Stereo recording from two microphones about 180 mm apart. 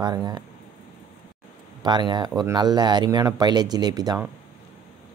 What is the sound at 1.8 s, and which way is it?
Speech, 25° right (ahead or behind).